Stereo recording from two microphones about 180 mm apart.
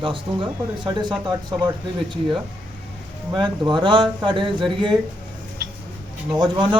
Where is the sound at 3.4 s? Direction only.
25° right (ahead or behind).